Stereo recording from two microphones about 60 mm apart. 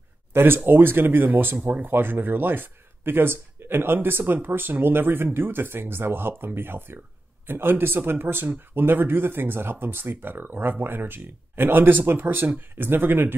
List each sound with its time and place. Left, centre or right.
0.3 s speech: right